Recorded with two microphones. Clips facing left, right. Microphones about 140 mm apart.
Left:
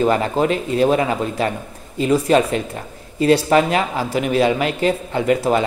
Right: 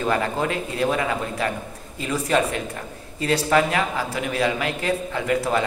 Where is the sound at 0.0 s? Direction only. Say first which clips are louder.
Left 6 dB; 25° left (ahead or behind).